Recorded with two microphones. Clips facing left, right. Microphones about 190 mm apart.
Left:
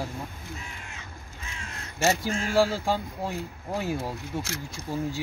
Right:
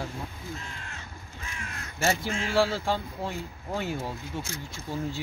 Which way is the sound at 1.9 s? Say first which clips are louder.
Left 2 dB; 40° left (ahead or behind).